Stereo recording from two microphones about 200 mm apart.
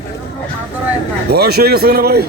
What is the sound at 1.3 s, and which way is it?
Speech, 50° right (ahead or behind).